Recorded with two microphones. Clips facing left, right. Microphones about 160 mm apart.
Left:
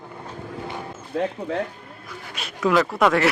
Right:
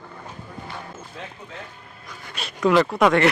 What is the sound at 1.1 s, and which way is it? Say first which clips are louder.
Speech: left 18 dB; 65° left (ahead or behind).